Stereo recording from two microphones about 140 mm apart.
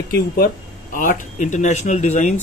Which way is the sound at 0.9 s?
70° left (ahead or behind).